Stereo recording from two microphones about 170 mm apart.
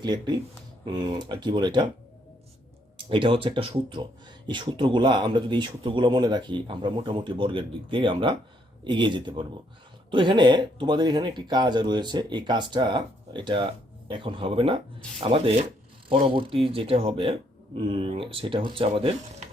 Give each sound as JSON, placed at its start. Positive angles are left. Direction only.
{"t": 0.0, "sound": "speech", "side_deg": -25}
{"t": 3.1, "sound": "speech", "side_deg": -30}